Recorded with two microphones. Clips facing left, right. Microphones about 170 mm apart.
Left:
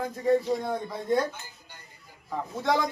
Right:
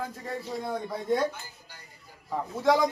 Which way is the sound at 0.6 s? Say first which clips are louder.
Left 1 dB; centre (ahead or behind).